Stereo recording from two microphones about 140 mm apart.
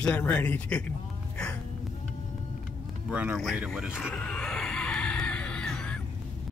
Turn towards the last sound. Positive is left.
turn(degrees=5)  # may be behind; listen again after turning